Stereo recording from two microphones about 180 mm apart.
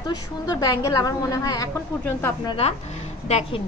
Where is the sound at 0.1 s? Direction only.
20° left (ahead or behind).